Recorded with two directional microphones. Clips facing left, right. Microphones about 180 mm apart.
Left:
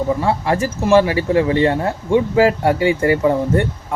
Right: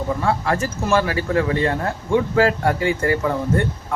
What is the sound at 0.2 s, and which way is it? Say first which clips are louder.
Speech: left 3 dB; 20° left (ahead or behind).